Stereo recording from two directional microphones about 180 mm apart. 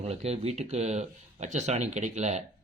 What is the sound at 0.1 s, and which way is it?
Speech, 35° right (ahead or behind).